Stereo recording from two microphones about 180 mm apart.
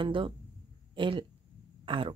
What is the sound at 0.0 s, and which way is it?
Speech, 30° right (ahead or behind).